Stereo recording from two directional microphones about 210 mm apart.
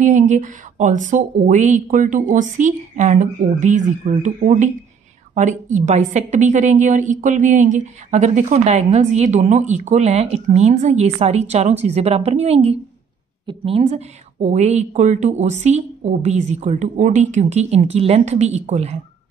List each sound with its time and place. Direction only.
0.0 s a woman's voice: 35° right (ahead or behind)